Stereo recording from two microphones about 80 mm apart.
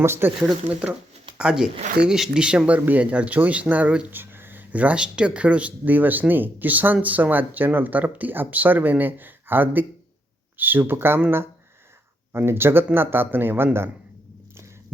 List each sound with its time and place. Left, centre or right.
0.0 s speech: right
0.4 s speech: centre